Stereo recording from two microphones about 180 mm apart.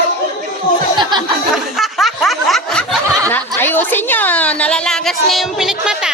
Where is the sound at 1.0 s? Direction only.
25° right (ahead or behind).